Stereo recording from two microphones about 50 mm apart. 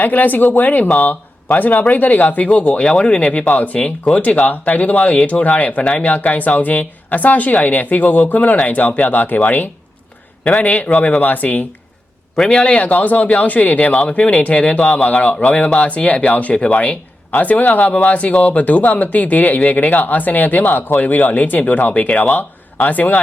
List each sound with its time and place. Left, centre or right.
0.0 s speech: left
12.5 s speech: left